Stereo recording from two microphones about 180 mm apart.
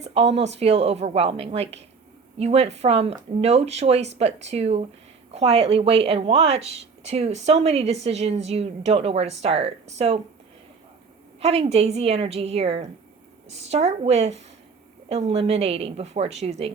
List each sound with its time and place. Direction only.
0.0 s a woman's voice: 35° right (ahead or behind)
11.3 s a woman's voice: 35° right (ahead or behind)